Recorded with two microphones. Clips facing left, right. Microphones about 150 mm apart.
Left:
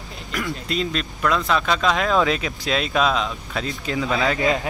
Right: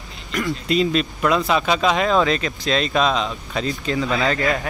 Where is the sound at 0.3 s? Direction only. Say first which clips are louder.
Right 5 dB; centre (ahead or behind).